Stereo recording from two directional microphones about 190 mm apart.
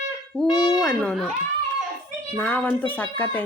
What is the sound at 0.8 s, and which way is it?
Speech, 5° left (ahead or behind).